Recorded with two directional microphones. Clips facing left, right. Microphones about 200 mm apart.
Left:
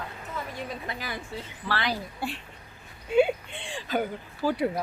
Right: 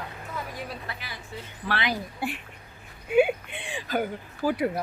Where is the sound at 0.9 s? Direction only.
20° left (ahead or behind).